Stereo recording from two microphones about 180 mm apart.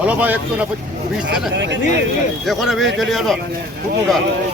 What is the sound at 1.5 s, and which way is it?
Speech, 80° right.